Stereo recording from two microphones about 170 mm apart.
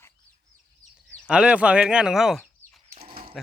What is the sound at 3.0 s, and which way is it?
Dog, 55° right (ahead or behind).